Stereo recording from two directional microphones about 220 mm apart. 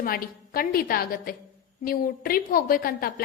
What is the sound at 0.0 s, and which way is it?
A woman's voice, 40° left (ahead or behind).